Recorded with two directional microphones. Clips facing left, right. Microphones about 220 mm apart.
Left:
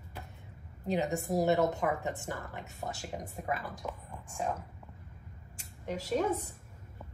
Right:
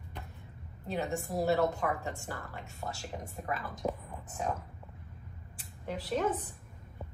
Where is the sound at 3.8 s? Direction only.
35° right (ahead or behind).